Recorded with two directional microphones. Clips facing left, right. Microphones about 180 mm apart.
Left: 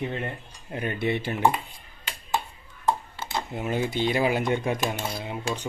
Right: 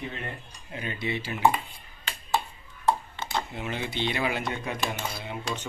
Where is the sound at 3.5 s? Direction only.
45° left (ahead or behind).